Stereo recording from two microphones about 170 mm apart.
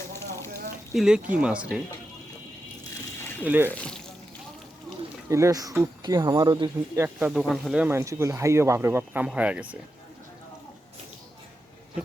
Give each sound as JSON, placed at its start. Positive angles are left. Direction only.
{"t": 0.3, "sound": "a sound", "side_deg": 15}
{"t": 0.9, "sound": "speech", "side_deg": -5}
{"t": 3.4, "sound": "speech", "side_deg": -10}
{"t": 5.3, "sound": "speech", "side_deg": -20}